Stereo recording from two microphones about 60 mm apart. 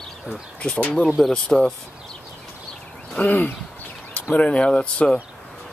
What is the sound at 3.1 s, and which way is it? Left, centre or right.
Speech, left.